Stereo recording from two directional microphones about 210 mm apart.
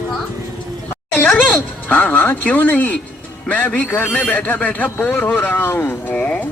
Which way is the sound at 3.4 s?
5° left (ahead or behind).